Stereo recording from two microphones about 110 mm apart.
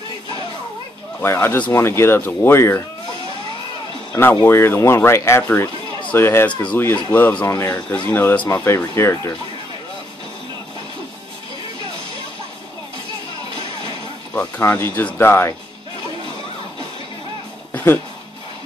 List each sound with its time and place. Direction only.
1.2 s speech: 25° left (ahead or behind)
4.1 s speech: 20° left (ahead or behind)
14.6 s speech: 20° left (ahead or behind)